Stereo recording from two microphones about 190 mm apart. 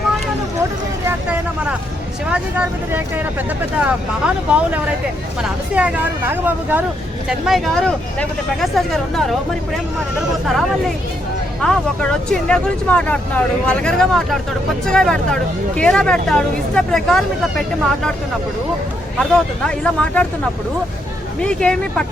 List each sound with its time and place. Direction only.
2.3 s speech: 10° right (ahead or behind)
5.4 s speech: 5° right (ahead or behind)
19.3 s speech: 5° left (ahead or behind)
21.4 s speech: 5° left (ahead or behind)